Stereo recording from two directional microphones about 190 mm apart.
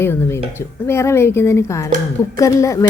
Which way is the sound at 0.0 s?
10° left (ahead or behind).